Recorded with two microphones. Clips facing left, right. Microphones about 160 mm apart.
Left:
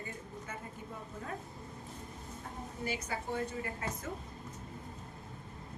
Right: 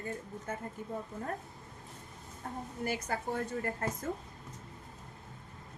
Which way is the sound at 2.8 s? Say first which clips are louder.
Right 3 dB; 50° right (ahead or behind).